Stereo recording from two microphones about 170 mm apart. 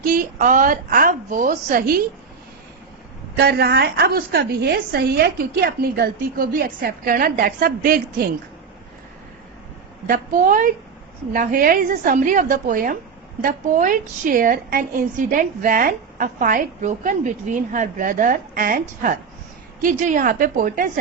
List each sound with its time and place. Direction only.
0.0 s a woman's voice: 55° right (ahead or behind)
3.3 s a woman's voice: 65° right (ahead or behind)
10.1 s a woman's voice: 55° right (ahead or behind)